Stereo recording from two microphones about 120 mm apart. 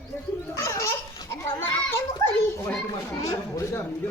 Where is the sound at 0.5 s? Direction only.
25° left (ahead or behind).